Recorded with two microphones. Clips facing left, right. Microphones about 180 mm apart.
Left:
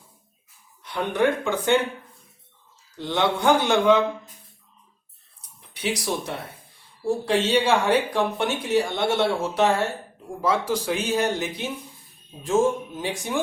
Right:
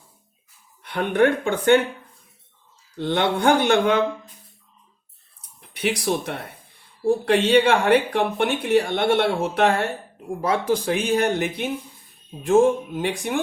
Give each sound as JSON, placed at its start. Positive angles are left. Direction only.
{"t": 0.8, "sound": "speech", "side_deg": -55}
{"t": 3.0, "sound": "speech", "side_deg": -55}
{"t": 5.7, "sound": "speech", "side_deg": -55}